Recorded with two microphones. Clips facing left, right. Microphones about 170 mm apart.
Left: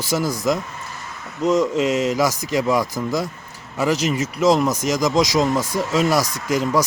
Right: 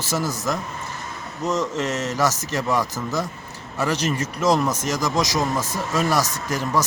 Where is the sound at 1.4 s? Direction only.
10° left (ahead or behind).